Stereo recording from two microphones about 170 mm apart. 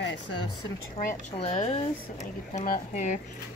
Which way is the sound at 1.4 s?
35° left (ahead or behind).